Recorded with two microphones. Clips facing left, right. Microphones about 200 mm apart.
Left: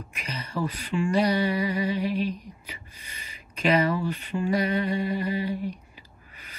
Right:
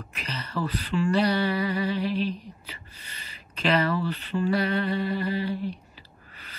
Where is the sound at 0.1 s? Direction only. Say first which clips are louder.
Even; 10° left (ahead or behind).